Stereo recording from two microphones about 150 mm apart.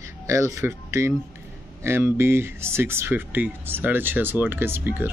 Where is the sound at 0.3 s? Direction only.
20° right (ahead or behind).